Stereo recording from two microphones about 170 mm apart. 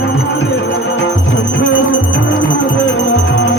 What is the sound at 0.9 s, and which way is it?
Music, 90° left.